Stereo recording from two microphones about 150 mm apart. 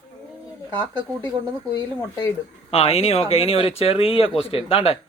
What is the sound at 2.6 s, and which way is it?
Speech, 40° left (ahead or behind).